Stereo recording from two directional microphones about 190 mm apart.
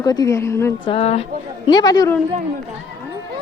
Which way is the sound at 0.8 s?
30° left (ahead or behind).